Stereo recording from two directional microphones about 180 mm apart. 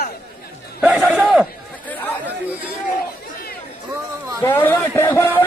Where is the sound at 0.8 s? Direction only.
5° right (ahead or behind).